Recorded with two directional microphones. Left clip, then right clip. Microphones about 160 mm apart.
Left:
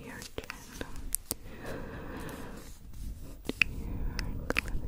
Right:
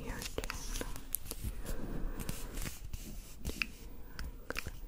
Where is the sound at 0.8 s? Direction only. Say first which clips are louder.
Left 3 dB; 35° left (ahead or behind).